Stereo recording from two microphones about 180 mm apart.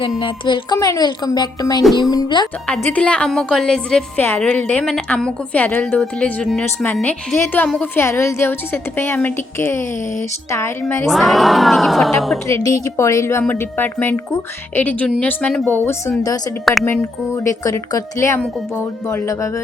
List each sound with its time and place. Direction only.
0.2 s a woman's voice: 25° left (ahead or behind)
2.6 s a woman's voice: 5° left (ahead or behind)
11.1 s speech: centre (ahead or behind)
12.5 s a woman's voice: 15° left (ahead or behind)